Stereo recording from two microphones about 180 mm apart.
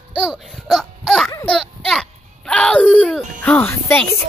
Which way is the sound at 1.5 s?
5° left (ahead or behind).